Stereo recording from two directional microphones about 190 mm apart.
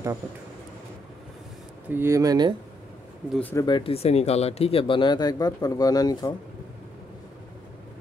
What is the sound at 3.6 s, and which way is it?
Speech, 25° left (ahead or behind).